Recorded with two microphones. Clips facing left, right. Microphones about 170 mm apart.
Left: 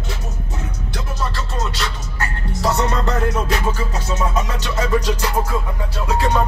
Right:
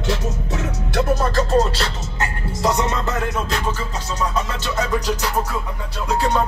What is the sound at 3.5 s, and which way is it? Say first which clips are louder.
Music: left 2 dB; 10° left (ahead or behind).